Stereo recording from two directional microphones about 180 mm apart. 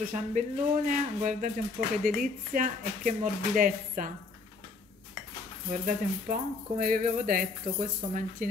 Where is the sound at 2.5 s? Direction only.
45° right (ahead or behind).